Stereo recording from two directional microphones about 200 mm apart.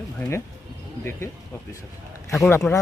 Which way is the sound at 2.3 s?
5° left (ahead or behind).